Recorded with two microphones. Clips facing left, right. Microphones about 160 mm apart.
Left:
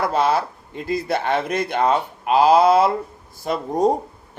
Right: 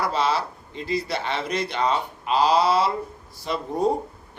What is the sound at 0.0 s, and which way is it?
Speech, 50° left (ahead or behind).